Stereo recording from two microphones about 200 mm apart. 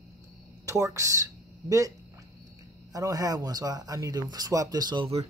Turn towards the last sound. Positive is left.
turn(degrees=-25)  # may be behind; listen again after turning